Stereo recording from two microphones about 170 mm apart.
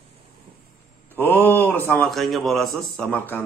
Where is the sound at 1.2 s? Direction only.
10° left (ahead or behind).